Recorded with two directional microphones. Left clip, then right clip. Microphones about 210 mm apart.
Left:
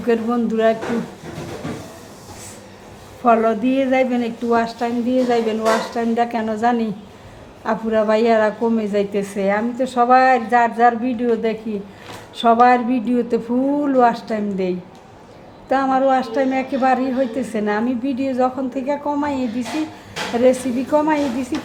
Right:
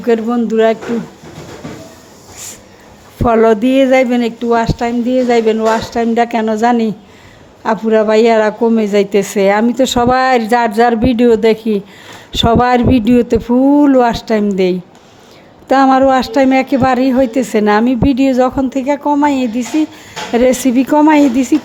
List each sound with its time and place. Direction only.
0.0 s a woman's voice: 35° right (ahead or behind)
3.2 s a woman's voice: 45° right (ahead or behind)